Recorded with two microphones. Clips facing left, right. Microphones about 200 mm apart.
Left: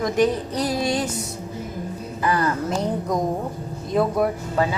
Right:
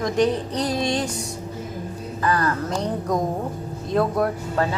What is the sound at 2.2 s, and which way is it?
Speech, 15° left (ahead or behind).